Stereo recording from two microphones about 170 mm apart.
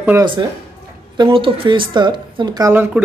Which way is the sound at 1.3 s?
30° right (ahead or behind).